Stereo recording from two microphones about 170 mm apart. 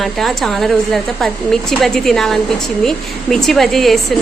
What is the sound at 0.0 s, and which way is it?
Speech, centre (ahead or behind).